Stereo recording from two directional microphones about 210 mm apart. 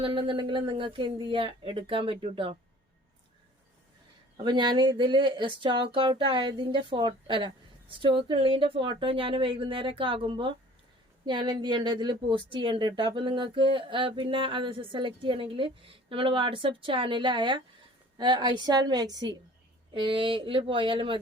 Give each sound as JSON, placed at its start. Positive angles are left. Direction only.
{"t": 0.0, "sound": "a woman's voice", "side_deg": -25}
{"t": 4.4, "sound": "a woman's voice", "side_deg": -20}